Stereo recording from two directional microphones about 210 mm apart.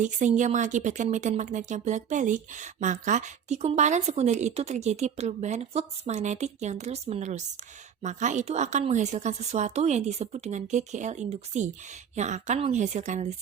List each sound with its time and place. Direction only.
0.0 s speech: 35° right (ahead or behind)